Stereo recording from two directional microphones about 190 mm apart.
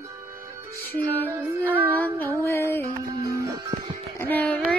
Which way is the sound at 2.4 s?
15° left (ahead or behind).